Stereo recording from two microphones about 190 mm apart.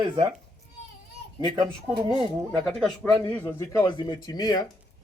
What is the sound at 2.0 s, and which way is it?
Speech, 25° right (ahead or behind).